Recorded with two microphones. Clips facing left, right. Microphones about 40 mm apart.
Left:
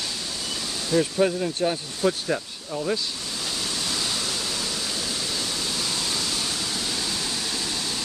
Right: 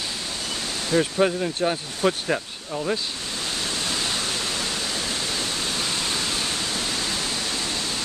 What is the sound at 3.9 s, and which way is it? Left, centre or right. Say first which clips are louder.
Pink noise: right 2 dB; right.